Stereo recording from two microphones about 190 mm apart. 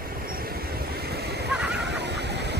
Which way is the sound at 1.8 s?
65° right (ahead or behind).